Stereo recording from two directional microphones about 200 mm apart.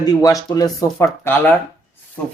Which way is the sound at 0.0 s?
15° left (ahead or behind).